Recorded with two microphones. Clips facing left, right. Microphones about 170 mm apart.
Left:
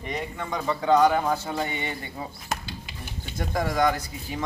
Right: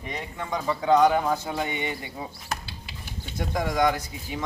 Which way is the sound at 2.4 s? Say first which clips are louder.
Left 2 dB; centre (ahead or behind).